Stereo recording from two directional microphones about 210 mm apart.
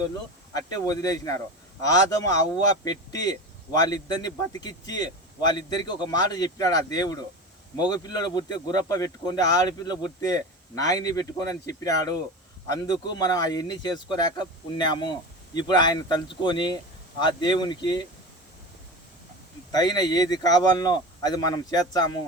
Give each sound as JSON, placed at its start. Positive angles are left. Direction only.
{"t": 0.7, "sound": "a man's voice", "side_deg": 15}
{"t": 19.7, "sound": "a man's voice", "side_deg": 20}